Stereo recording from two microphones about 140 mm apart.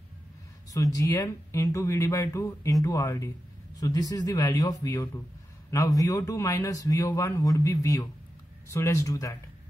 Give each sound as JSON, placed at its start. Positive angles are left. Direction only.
{"t": 0.9, "sound": "speech", "side_deg": 25}